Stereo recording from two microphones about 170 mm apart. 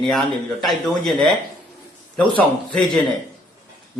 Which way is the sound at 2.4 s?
5° left (ahead or behind).